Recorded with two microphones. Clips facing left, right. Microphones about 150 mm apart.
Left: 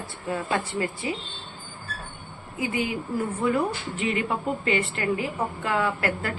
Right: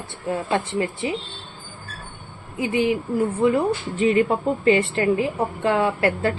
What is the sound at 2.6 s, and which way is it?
Speech, 25° right (ahead or behind).